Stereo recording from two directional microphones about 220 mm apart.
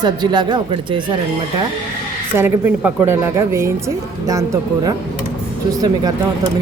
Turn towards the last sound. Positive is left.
turn(degrees=-15)  # may be behind; listen again after turning